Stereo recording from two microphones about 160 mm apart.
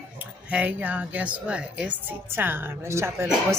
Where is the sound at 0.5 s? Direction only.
10° right (ahead or behind).